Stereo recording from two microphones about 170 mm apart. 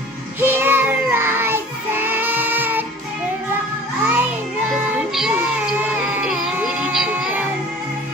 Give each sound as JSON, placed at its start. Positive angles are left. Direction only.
{"t": 0.4, "sound": "child singing", "side_deg": -10}
{"t": 4.0, "sound": "music", "side_deg": -10}